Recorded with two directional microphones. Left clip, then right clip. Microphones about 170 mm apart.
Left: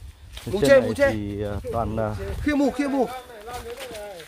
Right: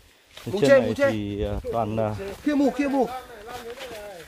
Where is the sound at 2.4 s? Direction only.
40° left (ahead or behind).